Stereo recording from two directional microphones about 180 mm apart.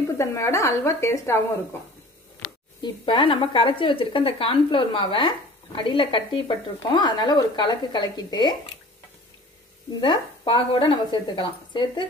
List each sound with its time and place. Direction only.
0.2 s speech: 15° left (ahead or behind)
2.8 s speech: 25° left (ahead or behind)
9.9 s speech: 25° left (ahead or behind)